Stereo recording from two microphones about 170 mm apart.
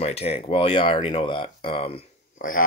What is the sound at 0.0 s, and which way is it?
Speech, 35° left (ahead or behind).